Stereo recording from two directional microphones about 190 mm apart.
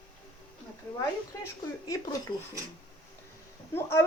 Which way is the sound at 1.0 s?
15° left (ahead or behind).